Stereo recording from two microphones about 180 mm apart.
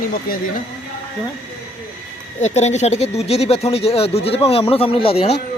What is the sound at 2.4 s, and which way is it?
Speech, 40° left (ahead or behind).